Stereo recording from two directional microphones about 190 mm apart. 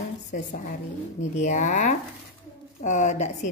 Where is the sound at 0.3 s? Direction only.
45° left (ahead or behind).